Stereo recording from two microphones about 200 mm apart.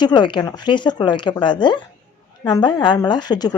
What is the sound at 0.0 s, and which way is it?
A woman's voice, 20° left (ahead or behind).